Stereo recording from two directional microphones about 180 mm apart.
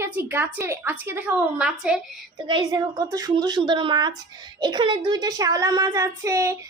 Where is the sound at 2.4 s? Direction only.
25° right (ahead or behind).